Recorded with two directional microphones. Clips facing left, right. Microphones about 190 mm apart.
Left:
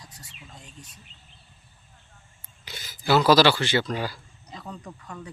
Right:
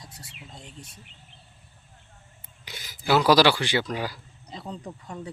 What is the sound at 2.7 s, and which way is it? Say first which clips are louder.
Speech: left 1 dB; 15° right (ahead or behind).